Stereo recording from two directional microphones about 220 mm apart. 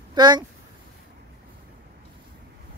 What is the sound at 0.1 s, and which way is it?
Speech, 20° right (ahead or behind).